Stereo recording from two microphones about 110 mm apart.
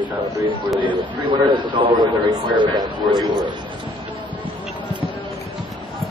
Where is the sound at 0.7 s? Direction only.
50° right (ahead or behind).